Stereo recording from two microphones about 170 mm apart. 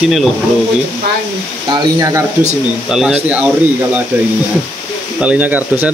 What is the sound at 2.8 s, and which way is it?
Speech, 5° right (ahead or behind).